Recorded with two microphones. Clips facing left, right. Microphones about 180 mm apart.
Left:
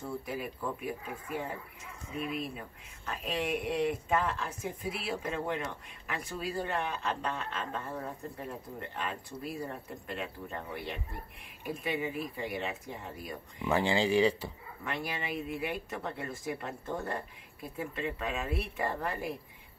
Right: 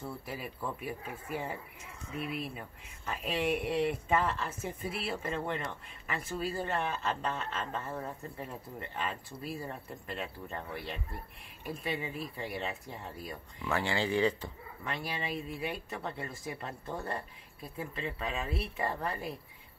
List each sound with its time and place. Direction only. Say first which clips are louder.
0.0 s speech: left 3 dB; centre (ahead or behind)
13.6 s speech: left 4 dB; 15° left (ahead or behind)
15.6 s speech: left 1 dB; centre (ahead or behind)